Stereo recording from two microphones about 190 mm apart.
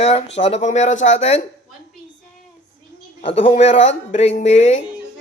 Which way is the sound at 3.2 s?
30° left (ahead or behind).